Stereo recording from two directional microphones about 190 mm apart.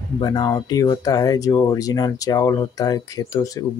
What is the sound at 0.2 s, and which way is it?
Speech, 20° left (ahead or behind).